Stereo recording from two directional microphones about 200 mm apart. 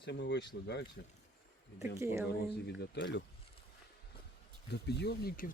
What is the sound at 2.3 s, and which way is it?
Speech, 55° left (ahead or behind).